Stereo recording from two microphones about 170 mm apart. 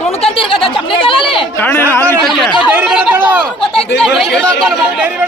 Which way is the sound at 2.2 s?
Centre (ahead or behind).